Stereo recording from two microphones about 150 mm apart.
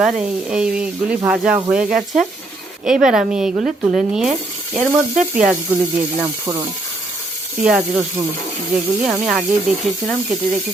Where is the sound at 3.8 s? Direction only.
5° right (ahead or behind).